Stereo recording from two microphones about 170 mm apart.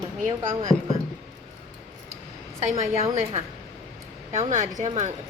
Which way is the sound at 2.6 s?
40° right (ahead or behind).